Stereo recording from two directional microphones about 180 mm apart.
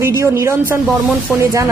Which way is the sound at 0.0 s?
15° right (ahead or behind).